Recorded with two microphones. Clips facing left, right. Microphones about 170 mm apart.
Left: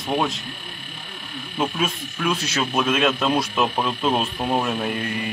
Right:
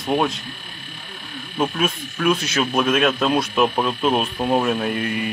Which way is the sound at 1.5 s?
10° right (ahead or behind).